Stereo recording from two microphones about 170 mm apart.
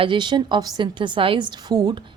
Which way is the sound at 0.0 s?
30° right (ahead or behind).